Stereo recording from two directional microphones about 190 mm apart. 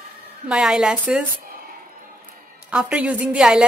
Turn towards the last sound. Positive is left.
turn(degrees=-5)  # may be behind; listen again after turning